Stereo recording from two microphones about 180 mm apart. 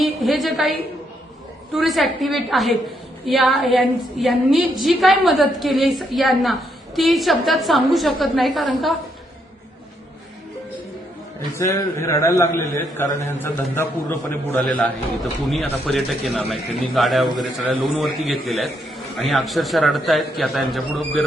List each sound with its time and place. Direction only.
0.0 s a woman's voice: centre (ahead or behind)
11.5 s a man's voice: 15° left (ahead or behind)